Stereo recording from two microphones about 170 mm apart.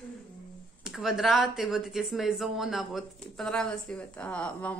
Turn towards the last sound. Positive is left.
turn(degrees=5)  # may be behind; listen again after turning